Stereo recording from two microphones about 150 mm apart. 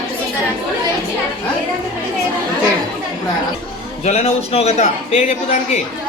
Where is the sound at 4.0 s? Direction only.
45° left (ahead or behind).